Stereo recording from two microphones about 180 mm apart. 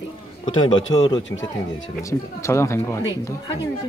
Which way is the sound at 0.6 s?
30° left (ahead or behind).